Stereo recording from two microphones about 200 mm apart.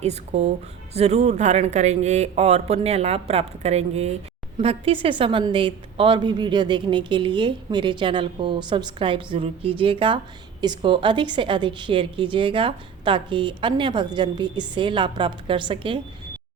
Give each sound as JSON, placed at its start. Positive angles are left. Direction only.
{"t": 0.0, "sound": "a woman's voice", "side_deg": -30}